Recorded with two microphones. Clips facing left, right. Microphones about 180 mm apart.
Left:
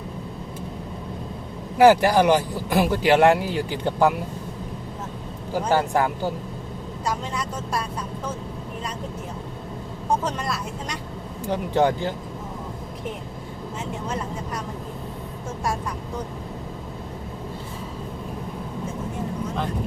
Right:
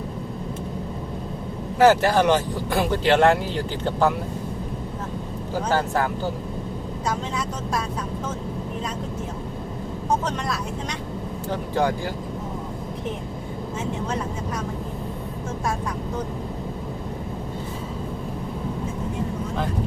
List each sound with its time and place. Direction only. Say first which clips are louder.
1.8 s speech: left 2 dB; 15° left (ahead or behind)
5.5 s speech: left 2 dB; 15° left (ahead or behind)
11.4 s speech: left 3 dB; 20° left (ahead or behind)